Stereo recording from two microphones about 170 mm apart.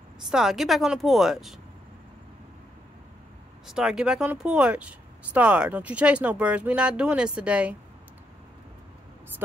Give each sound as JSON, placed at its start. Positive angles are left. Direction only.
{"t": 0.3, "sound": "speech", "side_deg": 0}
{"t": 3.6, "sound": "speech", "side_deg": -5}